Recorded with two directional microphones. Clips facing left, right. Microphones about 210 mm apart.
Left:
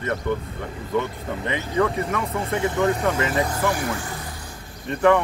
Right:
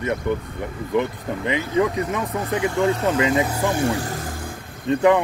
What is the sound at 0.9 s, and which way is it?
Speech, 15° right (ahead or behind).